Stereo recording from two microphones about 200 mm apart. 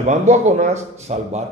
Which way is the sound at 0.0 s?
35° right (ahead or behind).